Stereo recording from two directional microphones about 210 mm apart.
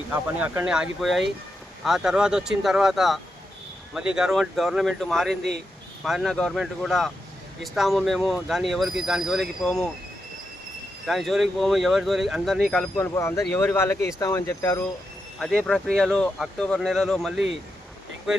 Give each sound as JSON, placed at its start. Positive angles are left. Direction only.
{"t": 0.1, "sound": "speech", "side_deg": -10}
{"t": 11.0, "sound": "speech", "side_deg": 0}